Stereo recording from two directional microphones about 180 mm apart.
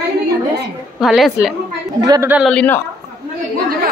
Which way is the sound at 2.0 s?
20° right (ahead or behind).